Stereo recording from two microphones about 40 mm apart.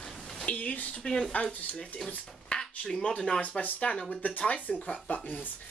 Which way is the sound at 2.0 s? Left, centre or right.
Centre.